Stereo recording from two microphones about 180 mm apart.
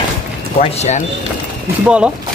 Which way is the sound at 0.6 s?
40° left (ahead or behind).